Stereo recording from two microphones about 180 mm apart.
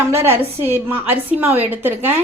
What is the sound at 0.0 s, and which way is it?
A woman's voice, 15° right (ahead or behind).